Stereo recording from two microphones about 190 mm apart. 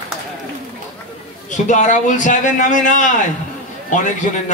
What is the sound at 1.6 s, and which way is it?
A man's voice, 40° left (ahead or behind).